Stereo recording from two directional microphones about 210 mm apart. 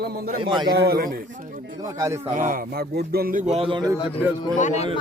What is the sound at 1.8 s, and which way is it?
Speech, 15° right (ahead or behind).